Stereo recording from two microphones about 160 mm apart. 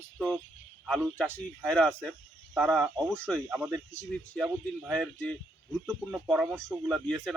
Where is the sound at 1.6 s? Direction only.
5° left (ahead or behind).